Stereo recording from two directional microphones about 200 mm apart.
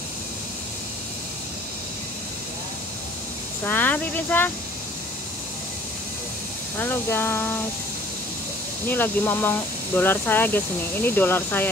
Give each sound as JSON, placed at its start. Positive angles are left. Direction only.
{"t": 3.6, "sound": "speech", "side_deg": 10}
{"t": 6.8, "sound": "speech", "side_deg": 10}
{"t": 8.8, "sound": "speech", "side_deg": 10}